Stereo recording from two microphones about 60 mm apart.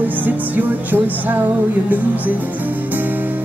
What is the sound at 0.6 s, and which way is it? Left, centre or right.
Speech, right.